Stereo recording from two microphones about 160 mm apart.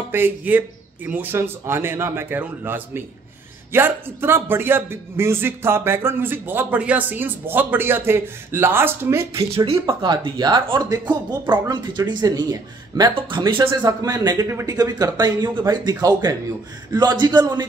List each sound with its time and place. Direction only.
0.1 s a man's voice: 10° right (ahead or behind)
9.4 s a man's voice: 35° right (ahead or behind)